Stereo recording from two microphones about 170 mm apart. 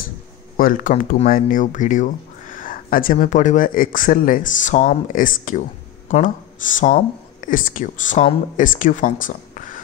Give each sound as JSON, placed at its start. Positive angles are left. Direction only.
{"t": 0.6, "sound": "speech", "side_deg": 55}